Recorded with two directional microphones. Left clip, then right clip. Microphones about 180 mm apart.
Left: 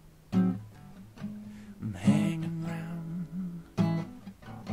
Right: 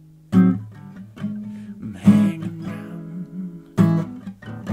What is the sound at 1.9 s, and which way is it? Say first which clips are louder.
Music: right 10 dB; 45° left (ahead or behind).